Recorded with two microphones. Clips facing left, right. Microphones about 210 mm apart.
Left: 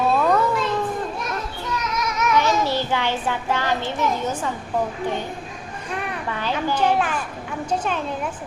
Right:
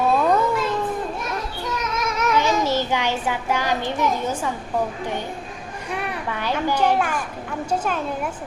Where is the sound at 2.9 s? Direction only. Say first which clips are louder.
Even; 10° right (ahead or behind).